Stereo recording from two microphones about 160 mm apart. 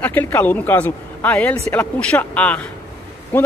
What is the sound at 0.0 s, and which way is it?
A man's voice, 10° left (ahead or behind).